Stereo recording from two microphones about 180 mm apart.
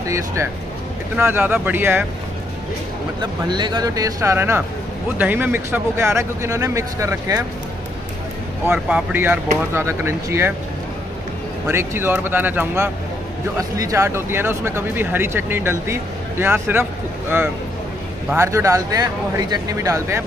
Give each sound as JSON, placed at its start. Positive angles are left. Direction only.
{"t": 0.0, "sound": "speech", "side_deg": -15}
{"t": 3.2, "sound": "speech", "side_deg": -25}
{"t": 8.6, "sound": "speech", "side_deg": -5}
{"t": 11.6, "sound": "speech", "side_deg": -15}